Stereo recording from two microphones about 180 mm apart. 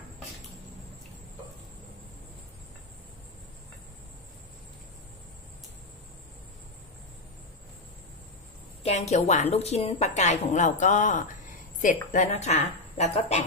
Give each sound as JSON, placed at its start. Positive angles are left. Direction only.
{"t": 8.8, "sound": "a woman's voice", "side_deg": 40}